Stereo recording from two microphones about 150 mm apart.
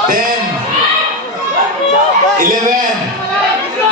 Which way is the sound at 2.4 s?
60° right (ahead or behind).